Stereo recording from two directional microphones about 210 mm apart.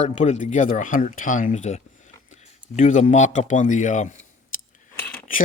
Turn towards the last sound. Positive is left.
turn(degrees=10)  # may be behind; listen again after turning